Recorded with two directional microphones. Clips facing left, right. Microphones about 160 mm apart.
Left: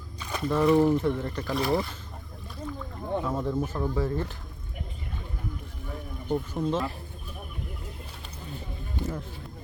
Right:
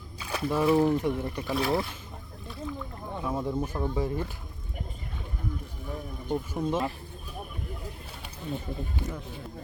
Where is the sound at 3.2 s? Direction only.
10° right (ahead or behind).